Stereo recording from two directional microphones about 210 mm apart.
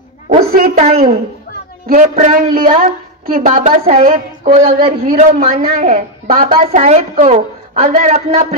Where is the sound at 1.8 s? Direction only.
40° right (ahead or behind).